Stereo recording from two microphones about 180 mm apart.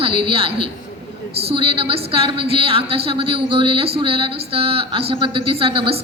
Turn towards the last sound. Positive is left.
turn(degrees=-30)  # may be behind; listen again after turning